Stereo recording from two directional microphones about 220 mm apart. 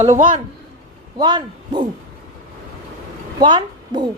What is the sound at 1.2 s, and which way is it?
Speech, 20° right (ahead or behind).